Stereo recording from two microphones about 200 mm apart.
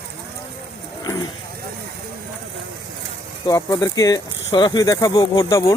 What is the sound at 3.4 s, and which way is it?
Speech, 20° left (ahead or behind).